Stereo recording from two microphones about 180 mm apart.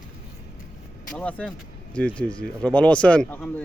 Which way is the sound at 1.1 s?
5° left (ahead or behind).